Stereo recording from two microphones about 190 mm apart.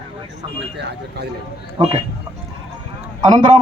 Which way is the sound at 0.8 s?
60° right (ahead or behind).